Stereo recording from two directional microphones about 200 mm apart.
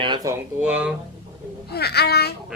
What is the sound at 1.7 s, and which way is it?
Speech, 55° left (ahead or behind).